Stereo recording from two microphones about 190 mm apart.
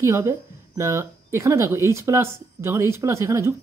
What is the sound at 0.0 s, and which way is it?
Speech, 15° right (ahead or behind).